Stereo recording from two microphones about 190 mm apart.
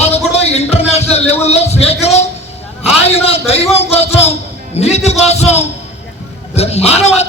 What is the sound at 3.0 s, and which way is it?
A man's voice, 30° left (ahead or behind).